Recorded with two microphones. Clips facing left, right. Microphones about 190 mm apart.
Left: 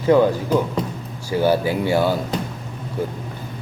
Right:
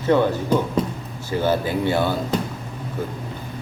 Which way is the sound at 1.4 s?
10° left (ahead or behind).